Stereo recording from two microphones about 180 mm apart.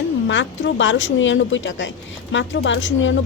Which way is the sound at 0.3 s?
90° left.